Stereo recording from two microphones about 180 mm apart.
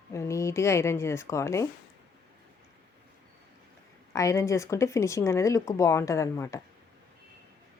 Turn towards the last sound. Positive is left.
turn(degrees=15)  # may be behind; listen again after turning